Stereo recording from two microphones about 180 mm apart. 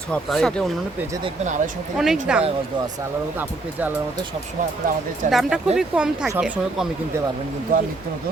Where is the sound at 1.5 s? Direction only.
45° right (ahead or behind).